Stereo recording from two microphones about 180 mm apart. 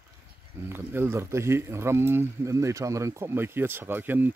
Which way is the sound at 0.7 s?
15° right (ahead or behind).